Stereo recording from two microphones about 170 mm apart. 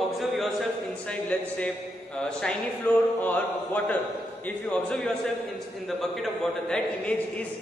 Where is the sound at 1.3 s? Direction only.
5° left (ahead or behind).